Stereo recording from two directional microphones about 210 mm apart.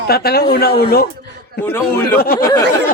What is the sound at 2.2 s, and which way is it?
Speech, 45° left (ahead or behind).